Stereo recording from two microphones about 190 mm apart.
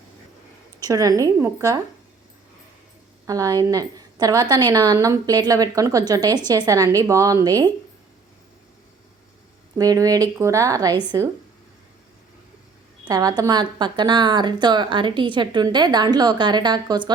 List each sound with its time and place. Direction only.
0.8 s a woman's voice: 20° right (ahead or behind)
3.2 s a woman's voice: 20° right (ahead or behind)
9.7 s a woman's voice: 20° right (ahead or behind)
13.1 s a woman's voice: 20° right (ahead or behind)